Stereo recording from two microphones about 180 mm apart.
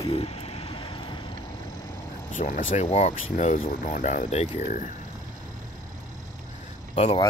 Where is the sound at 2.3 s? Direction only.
45° left (ahead or behind).